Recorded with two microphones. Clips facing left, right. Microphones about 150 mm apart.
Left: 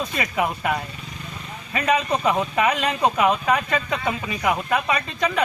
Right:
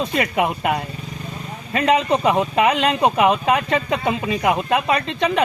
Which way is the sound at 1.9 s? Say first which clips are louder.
Right 4 dB; 25° right (ahead or behind).